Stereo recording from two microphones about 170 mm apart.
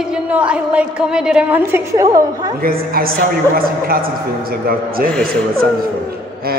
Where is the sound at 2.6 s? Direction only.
60° right (ahead or behind).